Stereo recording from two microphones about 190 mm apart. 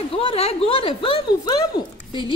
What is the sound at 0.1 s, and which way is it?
A woman's voice, 30° left (ahead or behind).